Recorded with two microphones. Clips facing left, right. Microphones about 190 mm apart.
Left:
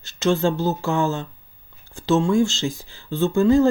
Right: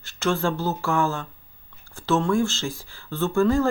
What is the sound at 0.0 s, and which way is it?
Speech, 20° left (ahead or behind).